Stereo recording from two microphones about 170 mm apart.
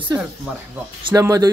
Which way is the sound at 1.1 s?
20° right (ahead or behind).